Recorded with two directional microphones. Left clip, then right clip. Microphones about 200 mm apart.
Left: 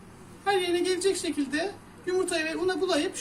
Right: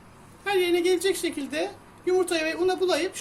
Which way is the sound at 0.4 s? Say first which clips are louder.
Right 3 dB; 40° right (ahead or behind).